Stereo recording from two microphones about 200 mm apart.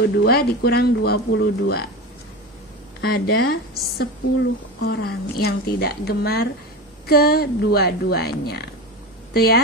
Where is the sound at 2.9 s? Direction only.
50° left (ahead or behind).